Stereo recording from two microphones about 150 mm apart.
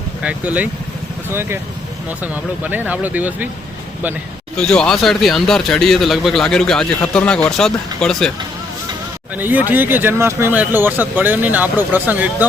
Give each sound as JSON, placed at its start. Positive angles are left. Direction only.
{"t": 0.2, "sound": "speech", "side_deg": -10}
{"t": 4.5, "sound": "speech", "side_deg": 5}
{"t": 9.3, "sound": "speech", "side_deg": -10}